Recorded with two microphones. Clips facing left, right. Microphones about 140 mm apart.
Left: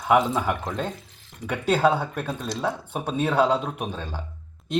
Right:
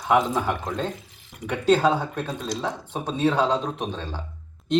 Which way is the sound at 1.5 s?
10° left (ahead or behind).